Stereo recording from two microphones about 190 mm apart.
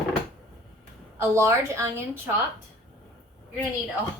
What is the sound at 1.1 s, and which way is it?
Speech, 15° right (ahead or behind).